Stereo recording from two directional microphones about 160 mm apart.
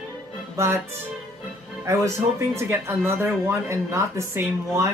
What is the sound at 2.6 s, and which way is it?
Speech, 15° right (ahead or behind).